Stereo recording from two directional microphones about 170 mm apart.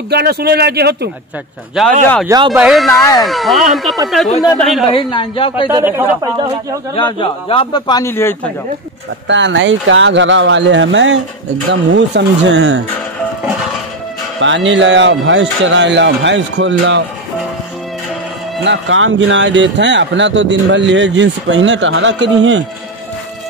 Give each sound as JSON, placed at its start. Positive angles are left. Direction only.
{"t": 0.1, "sound": "speech", "side_deg": -70}
{"t": 1.8, "sound": "speech", "side_deg": 0}
{"t": 2.2, "sound": "speech", "side_deg": -25}
{"t": 2.5, "sound": "speech", "side_deg": -5}
{"t": 2.9, "sound": "speech", "side_deg": 20}
{"t": 3.3, "sound": "speech", "side_deg": 0}
{"t": 4.8, "sound": "a woman's voice", "side_deg": 30}
{"t": 5.7, "sound": "speech", "side_deg": -15}
{"t": 7.0, "sound": "a man's voice", "side_deg": 30}
{"t": 8.1, "sound": "speech", "side_deg": 15}
{"t": 9.3, "sound": "speech", "side_deg": -90}
{"t": 14.4, "sound": "speech", "side_deg": -90}
{"t": 18.6, "sound": "speech", "side_deg": -90}